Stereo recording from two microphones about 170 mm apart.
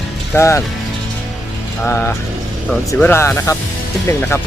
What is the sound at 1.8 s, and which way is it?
Speech, 15° left (ahead or behind).